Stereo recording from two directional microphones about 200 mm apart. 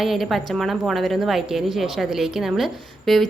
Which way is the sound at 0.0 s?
Centre (ahead or behind).